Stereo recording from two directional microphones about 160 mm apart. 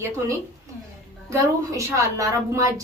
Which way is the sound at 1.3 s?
20° right (ahead or behind).